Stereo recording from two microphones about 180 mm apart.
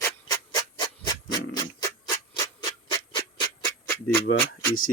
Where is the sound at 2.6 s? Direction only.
20° left (ahead or behind).